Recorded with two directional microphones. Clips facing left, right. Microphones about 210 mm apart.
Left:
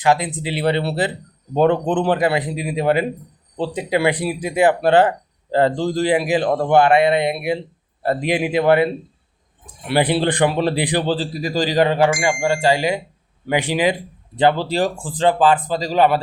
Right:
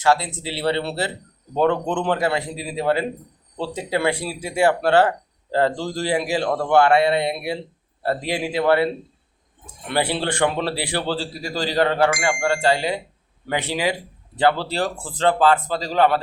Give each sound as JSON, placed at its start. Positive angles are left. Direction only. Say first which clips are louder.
{"t": 0.0, "sound": "speech", "louder": "left 2 dB", "side_deg": 15}
{"t": 9.9, "sound": "speech", "louder": "left 5 dB", "side_deg": 15}